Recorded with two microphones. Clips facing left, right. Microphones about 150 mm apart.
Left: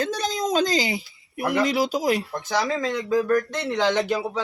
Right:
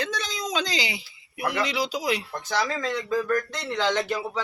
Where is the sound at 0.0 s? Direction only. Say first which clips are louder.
Left 6 dB; 45° left (ahead or behind).